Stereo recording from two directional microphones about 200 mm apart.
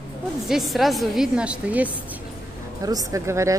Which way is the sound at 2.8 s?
20° right (ahead or behind).